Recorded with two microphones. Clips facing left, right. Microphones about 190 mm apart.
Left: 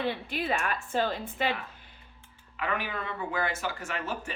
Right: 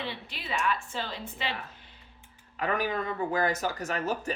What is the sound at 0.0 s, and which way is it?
A woman's voice, 50° left (ahead or behind).